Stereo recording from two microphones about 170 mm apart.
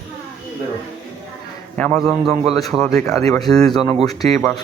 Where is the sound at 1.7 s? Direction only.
5° left (ahead or behind).